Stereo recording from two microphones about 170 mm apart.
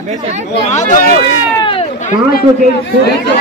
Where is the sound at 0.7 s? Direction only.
45° left (ahead or behind).